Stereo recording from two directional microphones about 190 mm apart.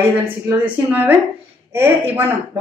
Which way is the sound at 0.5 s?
10° right (ahead or behind).